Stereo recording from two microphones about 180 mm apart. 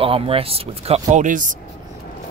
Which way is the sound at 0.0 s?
30° right (ahead or behind).